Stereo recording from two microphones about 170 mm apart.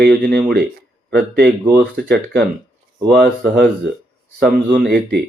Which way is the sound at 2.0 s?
70° right (ahead or behind).